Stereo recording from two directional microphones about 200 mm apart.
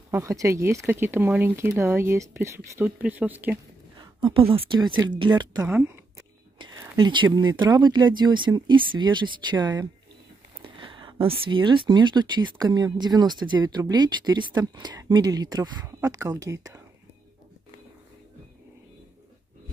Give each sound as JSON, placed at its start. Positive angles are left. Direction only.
{"t": 0.1, "sound": "speech", "side_deg": -15}
{"t": 4.0, "sound": "speech", "side_deg": -25}
{"t": 5.7, "sound": "speech", "side_deg": -10}
{"t": 6.6, "sound": "speech", "side_deg": -20}